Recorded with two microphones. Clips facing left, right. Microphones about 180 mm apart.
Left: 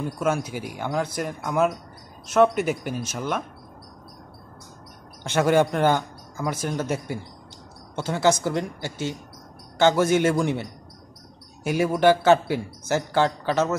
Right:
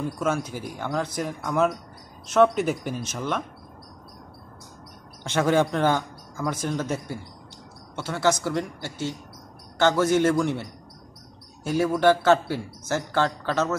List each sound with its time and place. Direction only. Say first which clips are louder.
0.2 s a man's voice: left 3 dB; 10° left (ahead or behind)
5.3 s a man's voice: left 2 dB; 5° left (ahead or behind)
8.0 s a woman's voice: left 2 dB; 20° left (ahead or behind)